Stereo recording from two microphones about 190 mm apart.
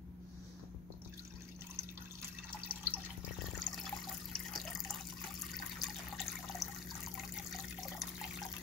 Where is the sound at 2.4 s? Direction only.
10° right (ahead or behind).